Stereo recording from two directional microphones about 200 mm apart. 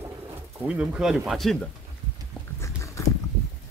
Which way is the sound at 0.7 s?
5° right (ahead or behind).